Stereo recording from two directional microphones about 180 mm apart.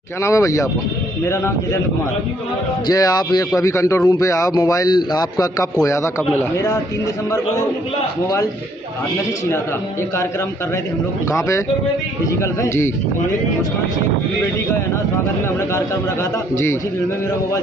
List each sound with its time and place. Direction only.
0.2 s a man's voice: 15° left (ahead or behind)
2.9 s a man's voice: 20° left (ahead or behind)
11.2 s a man's voice: 15° left (ahead or behind)